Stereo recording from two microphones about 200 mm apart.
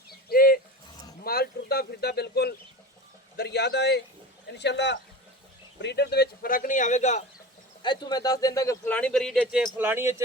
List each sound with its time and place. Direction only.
0.3 s a sound: 45° left (ahead or behind)
5.8 s speech: 60° left (ahead or behind); by 7.3 s 35° left (ahead or behind)
7.8 s speech: 20° left (ahead or behind); by 10.2 s 10° right (ahead or behind)